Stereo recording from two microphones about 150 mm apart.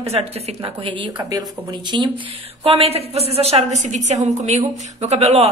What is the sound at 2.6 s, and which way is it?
Speech, 40° right (ahead or behind).